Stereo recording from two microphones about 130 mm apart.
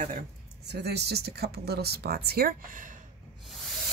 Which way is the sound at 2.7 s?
90° right.